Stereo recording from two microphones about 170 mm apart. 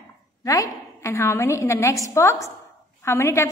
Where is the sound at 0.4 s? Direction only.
20° left (ahead or behind).